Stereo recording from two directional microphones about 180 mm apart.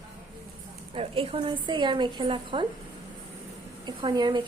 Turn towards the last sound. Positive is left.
turn(degrees=-20)  # may be behind; listen again after turning